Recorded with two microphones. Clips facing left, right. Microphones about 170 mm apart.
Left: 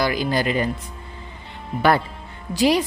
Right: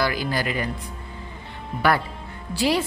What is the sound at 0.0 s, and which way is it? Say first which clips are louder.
Speech: left 3 dB; 20° left (ahead or behind).